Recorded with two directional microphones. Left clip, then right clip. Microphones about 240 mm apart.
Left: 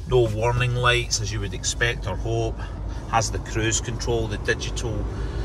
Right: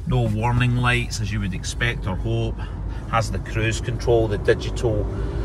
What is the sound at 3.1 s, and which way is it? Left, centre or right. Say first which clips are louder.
Speech: even; centre.